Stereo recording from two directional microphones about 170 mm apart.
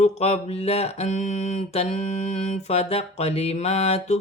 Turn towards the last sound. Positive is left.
turn(degrees=40)  # may be behind; listen again after turning